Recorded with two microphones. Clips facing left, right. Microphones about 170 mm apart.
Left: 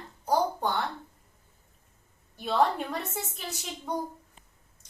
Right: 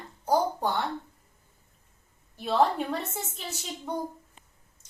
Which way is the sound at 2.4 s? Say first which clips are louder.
Right 1 dB; centre (ahead or behind).